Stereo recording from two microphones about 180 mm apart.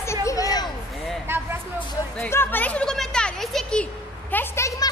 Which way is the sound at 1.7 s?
5° left (ahead or behind).